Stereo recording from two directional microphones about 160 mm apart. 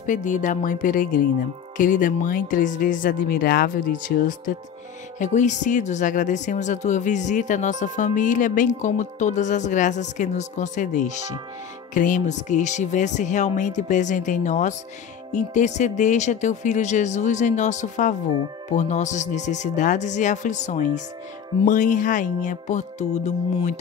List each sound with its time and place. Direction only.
0.0 s speech: 50° left (ahead or behind)
5.2 s speech: 50° left (ahead or behind)